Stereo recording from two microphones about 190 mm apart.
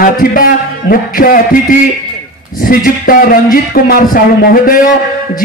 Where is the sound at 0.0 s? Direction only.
50° left (ahead or behind).